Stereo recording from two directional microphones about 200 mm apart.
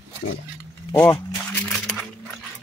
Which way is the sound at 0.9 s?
10° left (ahead or behind).